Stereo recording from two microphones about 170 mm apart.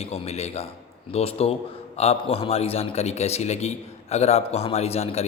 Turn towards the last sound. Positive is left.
turn(degrees=40)  # may be behind; listen again after turning